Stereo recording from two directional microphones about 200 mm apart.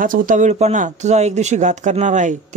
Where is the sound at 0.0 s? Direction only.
45° right (ahead or behind).